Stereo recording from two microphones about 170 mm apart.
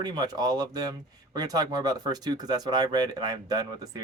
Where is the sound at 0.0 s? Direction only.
25° right (ahead or behind).